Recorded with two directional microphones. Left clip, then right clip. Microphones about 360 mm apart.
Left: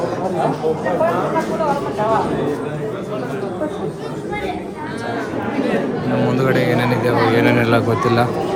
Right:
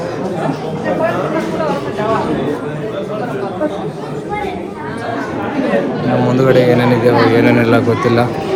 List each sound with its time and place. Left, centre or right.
6.2 s speech: centre